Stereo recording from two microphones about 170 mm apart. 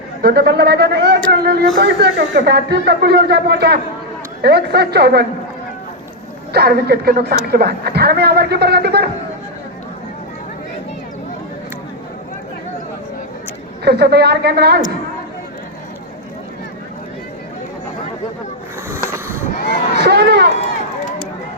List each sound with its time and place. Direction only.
0.2 s a man's voice: 70° right (ahead or behind)
6.5 s a man's voice: 65° right (ahead or behind)
13.8 s a man's voice: 75° right (ahead or behind)
18.9 s a sound: 15° right (ahead or behind)
19.5 s a sound: 70° left (ahead or behind)
20.1 s run: 70° right (ahead or behind)